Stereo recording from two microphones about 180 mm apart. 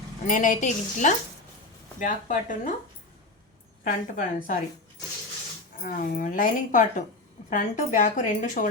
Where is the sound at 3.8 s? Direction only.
50° left (ahead or behind).